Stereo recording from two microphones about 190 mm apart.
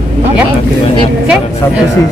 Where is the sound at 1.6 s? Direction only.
15° left (ahead or behind).